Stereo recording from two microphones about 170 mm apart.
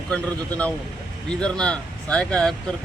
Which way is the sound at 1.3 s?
5° left (ahead or behind).